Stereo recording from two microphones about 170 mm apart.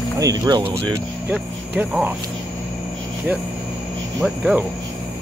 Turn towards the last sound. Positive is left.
turn(degrees=0)  # may be behind; listen again after turning